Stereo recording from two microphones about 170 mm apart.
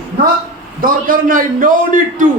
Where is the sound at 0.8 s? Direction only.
55° right (ahead or behind).